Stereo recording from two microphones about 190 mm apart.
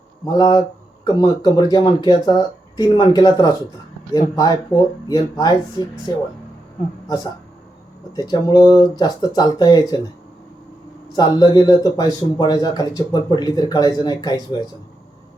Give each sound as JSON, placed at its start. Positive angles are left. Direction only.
{"t": 0.3, "sound": "speech", "side_deg": 20}
{"t": 8.1, "sound": "speech", "side_deg": 20}
{"t": 11.1, "sound": "speech", "side_deg": 20}